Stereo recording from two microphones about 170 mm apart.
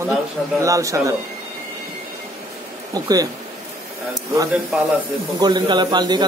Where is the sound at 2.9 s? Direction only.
20° right (ahead or behind).